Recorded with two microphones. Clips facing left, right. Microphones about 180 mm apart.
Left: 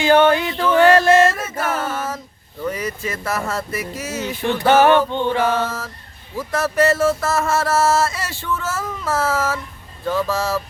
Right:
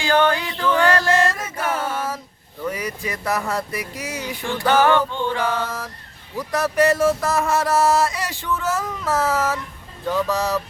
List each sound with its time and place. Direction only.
0.0 s music: 20° left (ahead or behind)
1.3 s a capella: 15° right (ahead or behind)
2.6 s music: 10° right (ahead or behind)
4.4 s a sound: 20° left (ahead or behind)
5.5 s music: 15° right (ahead or behind)